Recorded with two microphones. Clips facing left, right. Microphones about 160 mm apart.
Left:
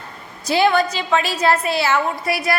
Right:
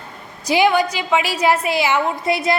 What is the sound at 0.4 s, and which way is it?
A woman's voice, 15° right (ahead or behind).